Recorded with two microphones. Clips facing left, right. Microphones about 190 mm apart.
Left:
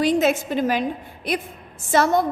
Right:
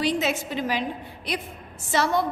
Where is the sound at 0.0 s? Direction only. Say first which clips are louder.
Left 6 dB; 50° left (ahead or behind).